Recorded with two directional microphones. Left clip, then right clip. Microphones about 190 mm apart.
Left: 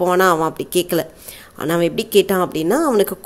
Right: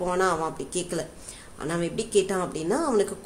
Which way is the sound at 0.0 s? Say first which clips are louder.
Left 10 dB; 40° left (ahead or behind).